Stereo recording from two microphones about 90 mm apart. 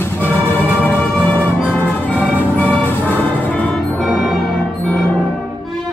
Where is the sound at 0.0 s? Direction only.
20° left (ahead or behind).